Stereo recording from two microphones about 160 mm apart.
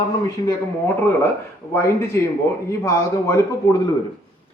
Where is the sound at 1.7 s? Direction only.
15° left (ahead or behind).